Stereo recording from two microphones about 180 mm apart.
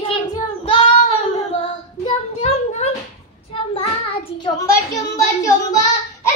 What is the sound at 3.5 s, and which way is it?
Child singing, 30° left (ahead or behind).